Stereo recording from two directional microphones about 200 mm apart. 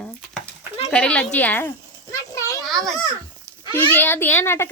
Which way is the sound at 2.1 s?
15° left (ahead or behind).